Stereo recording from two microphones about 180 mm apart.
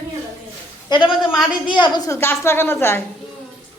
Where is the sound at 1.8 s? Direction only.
20° left (ahead or behind).